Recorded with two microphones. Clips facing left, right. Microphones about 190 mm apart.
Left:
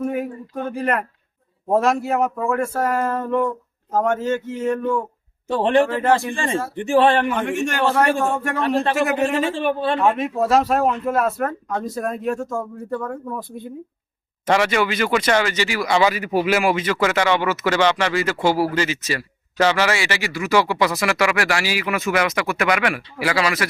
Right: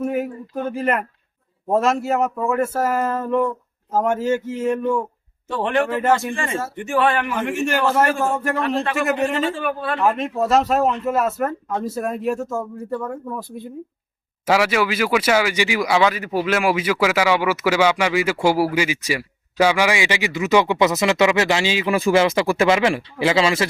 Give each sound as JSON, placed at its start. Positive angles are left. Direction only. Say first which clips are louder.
{"t": 0.0, "sound": "speech", "louder": "right 1 dB", "side_deg": -5}
{"t": 5.5, "sound": "speech", "louder": "left 4 dB", "side_deg": 30}
{"t": 5.8, "sound": "speech", "louder": "left 1 dB", "side_deg": -5}
{"t": 6.7, "sound": "speech", "louder": "left 4 dB", "side_deg": 30}
{"t": 7.3, "sound": "speech", "louder": "even", "side_deg": -5}
{"t": 9.6, "sound": "a man's voice", "louder": "left 4 dB", "side_deg": 30}
{"t": 10.0, "sound": "speech", "louder": "left 1 dB", "side_deg": 0}
{"t": 15.9, "sound": "a man's voice", "louder": "left 3 dB", "side_deg": 5}
{"t": 16.7, "sound": "speech", "louder": "right 1 dB", "side_deg": -10}